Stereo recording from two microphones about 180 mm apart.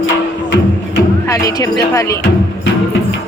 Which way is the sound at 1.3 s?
20° left (ahead or behind).